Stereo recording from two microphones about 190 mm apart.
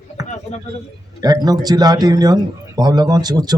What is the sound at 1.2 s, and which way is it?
Speech, 20° right (ahead or behind).